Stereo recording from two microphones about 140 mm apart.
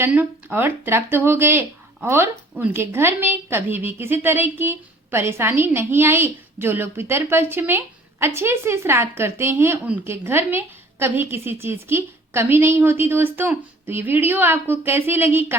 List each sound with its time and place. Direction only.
0.0 s a woman's voice: 10° right (ahead or behind)